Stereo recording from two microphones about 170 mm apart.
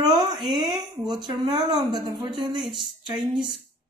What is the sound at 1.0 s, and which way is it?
Speech, 25° right (ahead or behind).